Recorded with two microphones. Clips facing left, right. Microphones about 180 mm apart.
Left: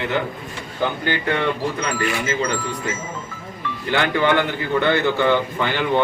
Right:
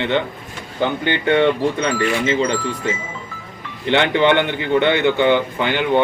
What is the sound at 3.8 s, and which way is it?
A man's voice, 25° right (ahead or behind).